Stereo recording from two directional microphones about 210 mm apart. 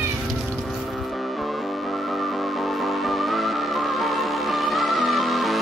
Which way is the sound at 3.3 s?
Centre (ahead or behind).